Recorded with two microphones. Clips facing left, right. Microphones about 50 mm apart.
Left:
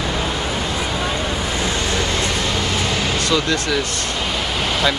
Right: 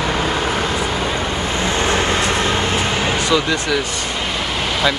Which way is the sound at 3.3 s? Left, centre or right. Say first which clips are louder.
Even; centre.